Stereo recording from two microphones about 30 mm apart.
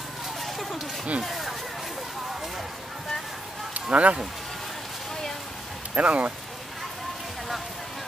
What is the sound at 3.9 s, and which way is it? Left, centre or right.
Speech, right.